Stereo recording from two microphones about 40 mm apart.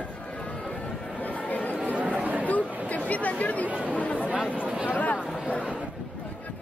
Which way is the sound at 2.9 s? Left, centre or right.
Left.